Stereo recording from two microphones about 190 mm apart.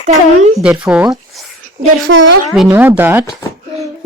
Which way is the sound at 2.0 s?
75° right (ahead or behind).